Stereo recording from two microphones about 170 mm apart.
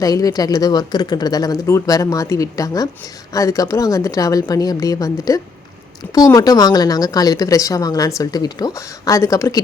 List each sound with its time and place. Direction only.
0.0 s a woman's voice: 20° left (ahead or behind)